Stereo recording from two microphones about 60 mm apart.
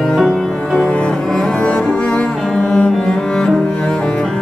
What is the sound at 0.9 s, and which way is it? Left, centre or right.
Cello, centre.